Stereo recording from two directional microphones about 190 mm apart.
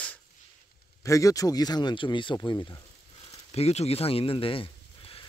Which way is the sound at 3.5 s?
35° left (ahead or behind).